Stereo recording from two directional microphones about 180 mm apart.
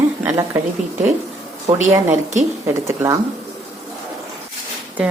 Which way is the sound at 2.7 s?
15° right (ahead or behind).